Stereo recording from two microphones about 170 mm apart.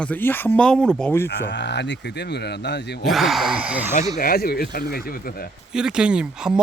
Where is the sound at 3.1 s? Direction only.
Centre (ahead or behind).